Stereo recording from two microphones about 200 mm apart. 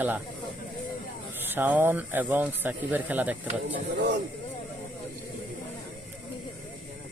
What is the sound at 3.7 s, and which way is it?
Speech, 60° right (ahead or behind).